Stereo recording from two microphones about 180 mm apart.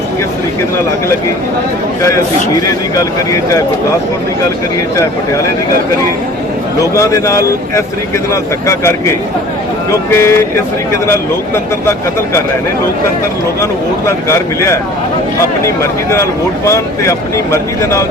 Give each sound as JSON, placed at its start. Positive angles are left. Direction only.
{"t": 2.0, "sound": "speech", "side_deg": 15}
{"t": 6.7, "sound": "speech", "side_deg": 15}
{"t": 14.1, "sound": "speech", "side_deg": 15}
{"t": 16.6, "sound": "speech", "side_deg": 15}